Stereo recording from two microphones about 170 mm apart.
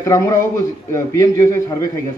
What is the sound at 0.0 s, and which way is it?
Speech, 15° left (ahead or behind).